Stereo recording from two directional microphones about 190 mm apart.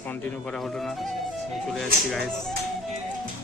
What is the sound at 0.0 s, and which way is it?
Speech, 10° left (ahead or behind).